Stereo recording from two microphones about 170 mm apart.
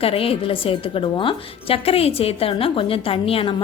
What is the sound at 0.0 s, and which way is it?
A woman's voice, 35° left (ahead or behind).